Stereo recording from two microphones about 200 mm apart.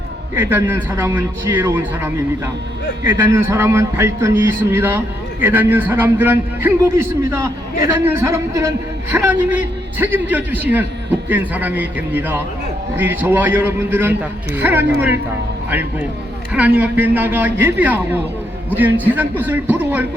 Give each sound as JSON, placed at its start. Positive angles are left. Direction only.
{"t": 0.3, "sound": "a man's voice", "side_deg": -10}